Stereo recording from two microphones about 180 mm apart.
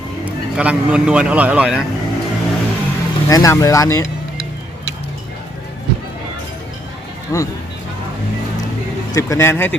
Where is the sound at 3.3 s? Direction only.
20° left (ahead or behind).